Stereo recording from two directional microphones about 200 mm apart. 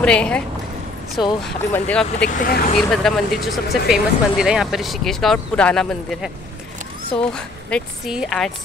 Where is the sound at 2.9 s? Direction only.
Centre (ahead or behind).